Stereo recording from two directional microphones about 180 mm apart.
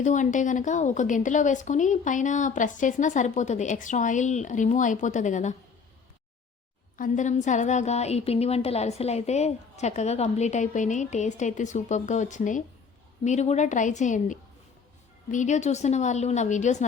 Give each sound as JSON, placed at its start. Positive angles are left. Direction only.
{"t": 0.0, "sound": "a woman's voice", "side_deg": 45}
{"t": 6.9, "sound": "a woman's voice", "side_deg": 45}